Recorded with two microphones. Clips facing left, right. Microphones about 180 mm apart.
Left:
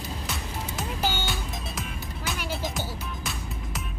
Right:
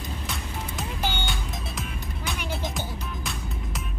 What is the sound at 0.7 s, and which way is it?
Music, centre (ahead or behind).